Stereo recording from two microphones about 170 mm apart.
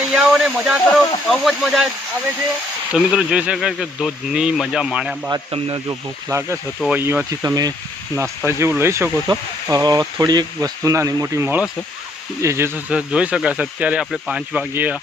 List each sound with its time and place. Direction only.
0.1 s speech: 5° right (ahead or behind)
2.9 s speech: 5° right (ahead or behind)
5.3 s speech: 30° right (ahead or behind)
6.2 s speech: 15° right (ahead or behind)
6.7 s speech: centre (ahead or behind)
7.0 s speech: 15° right (ahead or behind)